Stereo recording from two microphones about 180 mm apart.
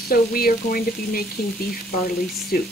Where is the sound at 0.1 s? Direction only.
55° left (ahead or behind).